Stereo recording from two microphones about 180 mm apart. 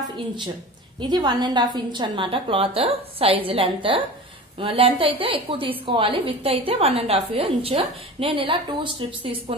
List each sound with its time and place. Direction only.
1.0 s a woman's voice: 25° right (ahead or behind)